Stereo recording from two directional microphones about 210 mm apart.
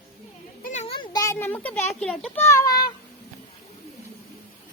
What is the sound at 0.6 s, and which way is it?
A child's voice, 35° left (ahead or behind).